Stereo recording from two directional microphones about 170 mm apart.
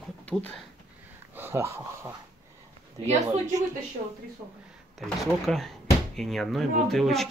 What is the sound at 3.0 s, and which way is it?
Speech, 40° right (ahead or behind).